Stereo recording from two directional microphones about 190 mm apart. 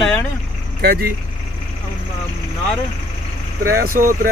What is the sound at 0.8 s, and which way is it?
Speech, 55° right (ahead or behind).